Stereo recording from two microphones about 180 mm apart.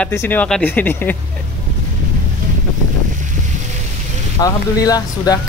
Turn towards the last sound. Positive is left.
turn(degrees=20)  # may be behind; listen again after turning